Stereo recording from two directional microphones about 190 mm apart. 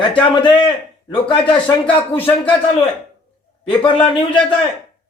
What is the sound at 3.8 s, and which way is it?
Speech, 25° left (ahead or behind).